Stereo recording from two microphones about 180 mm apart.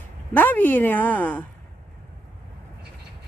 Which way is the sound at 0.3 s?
10° left (ahead or behind).